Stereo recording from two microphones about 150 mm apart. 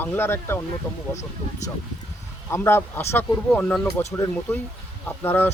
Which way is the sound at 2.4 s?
15° left (ahead or behind).